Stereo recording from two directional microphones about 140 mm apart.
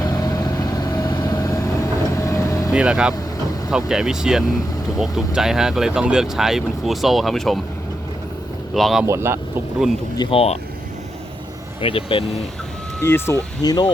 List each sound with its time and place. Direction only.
0.0 s vehicle: 25° left (ahead or behind)
2.7 s speech: 5° right (ahead or behind)
8.7 s speech: centre (ahead or behind)
9.0 s speech: 20° right (ahead or behind)
10.3 s speech: 45° left (ahead or behind)
11.8 s speech: 40° left (ahead or behind)
13.0 s speech: 15° left (ahead or behind)
13.6 s speech: 30° left (ahead or behind)